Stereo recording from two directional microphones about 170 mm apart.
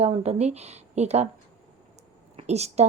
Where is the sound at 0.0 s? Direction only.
40° right (ahead or behind).